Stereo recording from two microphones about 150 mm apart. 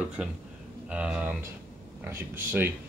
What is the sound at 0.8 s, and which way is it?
Speech, 5° right (ahead or behind).